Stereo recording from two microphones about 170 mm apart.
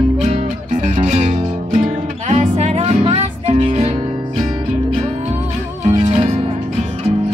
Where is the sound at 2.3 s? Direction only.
40° right (ahead or behind).